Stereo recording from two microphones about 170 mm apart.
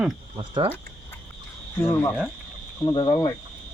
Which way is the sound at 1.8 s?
15° left (ahead or behind).